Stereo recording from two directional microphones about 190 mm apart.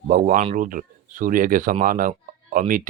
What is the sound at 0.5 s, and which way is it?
Speech, 45° right (ahead or behind).